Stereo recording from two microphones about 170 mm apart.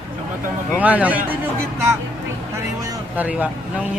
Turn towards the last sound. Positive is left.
turn(degrees=-10)  # may be behind; listen again after turning